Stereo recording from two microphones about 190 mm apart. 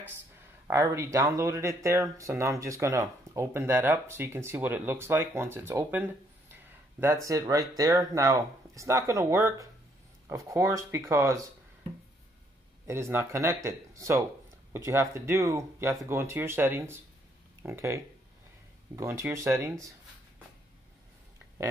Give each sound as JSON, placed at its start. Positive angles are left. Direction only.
{"t": 0.7, "sound": "speech", "side_deg": -15}
{"t": 6.5, "sound": "a sound", "side_deg": -10}
{"t": 7.2, "sound": "speech", "side_deg": -15}
{"t": 12.8, "sound": "speech", "side_deg": -15}